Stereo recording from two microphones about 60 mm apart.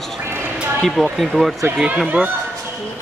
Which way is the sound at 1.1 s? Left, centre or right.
Centre.